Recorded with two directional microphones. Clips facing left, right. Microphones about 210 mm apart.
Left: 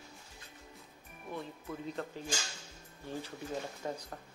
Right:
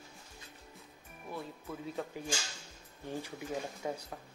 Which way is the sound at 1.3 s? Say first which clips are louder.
Left 1 dB; centre (ahead or behind).